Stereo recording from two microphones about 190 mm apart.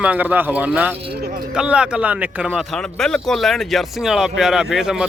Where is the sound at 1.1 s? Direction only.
55° right (ahead or behind).